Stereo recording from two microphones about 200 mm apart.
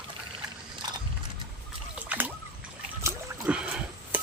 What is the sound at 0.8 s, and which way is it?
Mechanisms, 20° right (ahead or behind).